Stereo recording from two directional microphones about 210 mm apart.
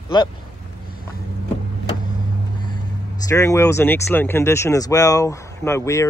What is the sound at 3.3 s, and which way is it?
Speech, 15° left (ahead or behind).